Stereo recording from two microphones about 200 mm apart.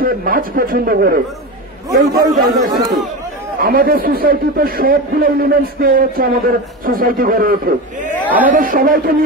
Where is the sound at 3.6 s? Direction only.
45° right (ahead or behind).